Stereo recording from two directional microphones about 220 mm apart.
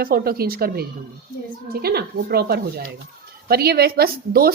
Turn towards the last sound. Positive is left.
turn(degrees=-45)  # may be behind; listen again after turning